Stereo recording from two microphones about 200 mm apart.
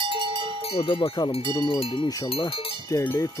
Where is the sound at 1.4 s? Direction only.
25° right (ahead or behind).